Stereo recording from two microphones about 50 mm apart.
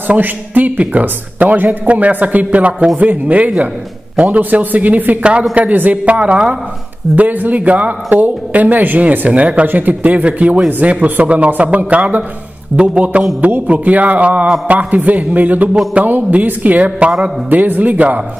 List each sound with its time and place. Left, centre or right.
0.1 s a man's voice: right